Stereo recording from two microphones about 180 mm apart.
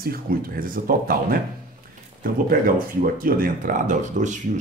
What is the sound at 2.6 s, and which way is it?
Speech, 50° right (ahead or behind).